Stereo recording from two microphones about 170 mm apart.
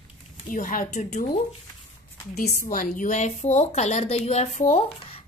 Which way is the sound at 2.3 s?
55° left (ahead or behind).